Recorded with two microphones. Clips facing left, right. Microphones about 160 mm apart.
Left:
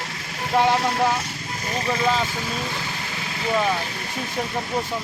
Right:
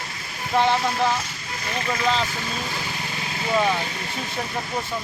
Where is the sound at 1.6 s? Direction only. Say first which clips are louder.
Left 2 dB; 35° left (ahead or behind).